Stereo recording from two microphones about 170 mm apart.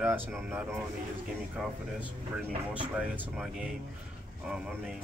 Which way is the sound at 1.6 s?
Centre (ahead or behind).